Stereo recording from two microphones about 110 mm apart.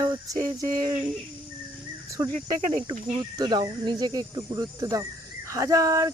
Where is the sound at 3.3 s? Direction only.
40° right (ahead or behind).